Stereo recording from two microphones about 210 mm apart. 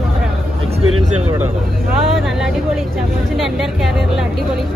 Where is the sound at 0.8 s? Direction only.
90° right.